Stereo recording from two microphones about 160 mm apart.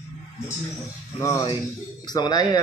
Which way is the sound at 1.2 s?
20° left (ahead or behind).